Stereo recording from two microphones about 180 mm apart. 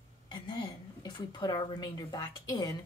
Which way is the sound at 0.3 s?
25° left (ahead or behind).